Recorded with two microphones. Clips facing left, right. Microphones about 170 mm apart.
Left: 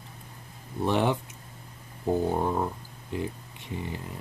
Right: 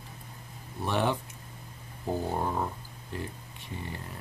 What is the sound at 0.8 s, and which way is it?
Speech, 20° left (ahead or behind).